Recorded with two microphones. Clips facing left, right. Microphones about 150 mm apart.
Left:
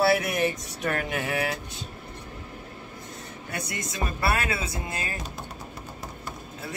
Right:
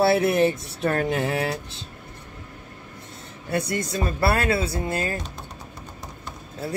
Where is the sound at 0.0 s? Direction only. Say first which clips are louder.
Right 4 dB; 30° right (ahead or behind).